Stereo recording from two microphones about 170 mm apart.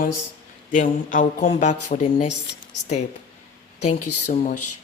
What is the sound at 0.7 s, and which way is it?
A man's voice, 50° left (ahead or behind).